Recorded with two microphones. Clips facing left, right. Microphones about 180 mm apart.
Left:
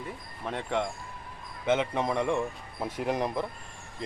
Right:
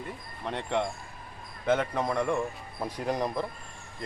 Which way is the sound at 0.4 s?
Centre (ahead or behind).